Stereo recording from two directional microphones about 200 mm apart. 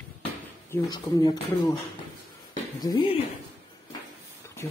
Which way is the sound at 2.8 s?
25° left (ahead or behind).